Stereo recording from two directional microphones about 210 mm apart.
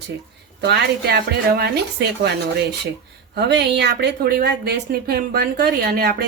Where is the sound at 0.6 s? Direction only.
50° right (ahead or behind).